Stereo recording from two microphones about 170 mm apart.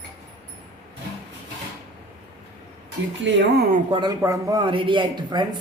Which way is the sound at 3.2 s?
90° right.